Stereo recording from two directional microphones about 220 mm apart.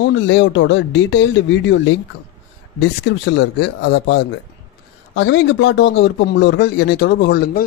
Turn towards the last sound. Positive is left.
turn(degrees=45)  # may be behind; listen again after turning